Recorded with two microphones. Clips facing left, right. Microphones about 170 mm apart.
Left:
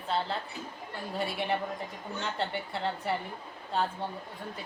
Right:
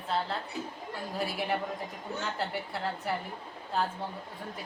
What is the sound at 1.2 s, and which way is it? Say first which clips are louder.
A woman's voice: left 1 dB; centre (ahead or behind).